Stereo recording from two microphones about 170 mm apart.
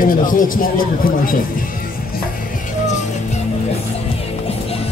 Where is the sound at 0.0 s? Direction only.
55° left (ahead or behind).